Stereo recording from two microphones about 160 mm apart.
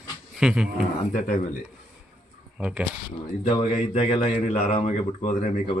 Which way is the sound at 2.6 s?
5° right (ahead or behind).